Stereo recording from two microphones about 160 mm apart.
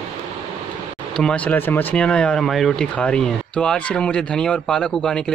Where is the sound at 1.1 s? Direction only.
5° left (ahead or behind).